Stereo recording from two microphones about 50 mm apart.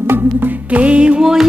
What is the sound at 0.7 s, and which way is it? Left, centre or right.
Music, right.